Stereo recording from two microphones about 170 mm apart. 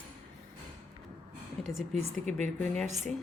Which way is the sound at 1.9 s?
45° right (ahead or behind).